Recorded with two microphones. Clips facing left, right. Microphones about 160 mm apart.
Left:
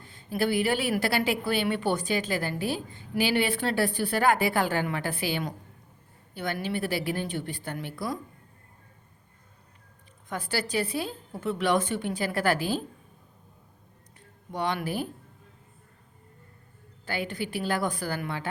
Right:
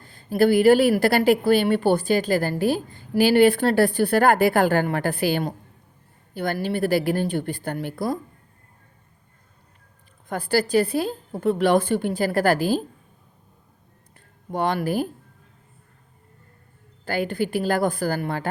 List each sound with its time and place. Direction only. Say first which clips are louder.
0.0 s a woman's voice: right 9 dB; 40° right (ahead or behind)
3.8 s a woman's voice: right 6 dB; 60° right (ahead or behind)
10.2 s a woman's voice: right 9 dB; 50° right (ahead or behind)
14.5 s a woman's voice: right 6 dB; 50° right (ahead or behind)
17.1 s a woman's voice: right 8 dB; 45° right (ahead or behind)